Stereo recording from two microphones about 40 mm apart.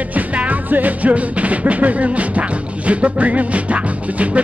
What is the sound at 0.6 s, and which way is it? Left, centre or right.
Music, right.